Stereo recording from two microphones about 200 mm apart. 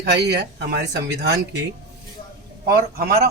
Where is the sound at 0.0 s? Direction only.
55° right (ahead or behind).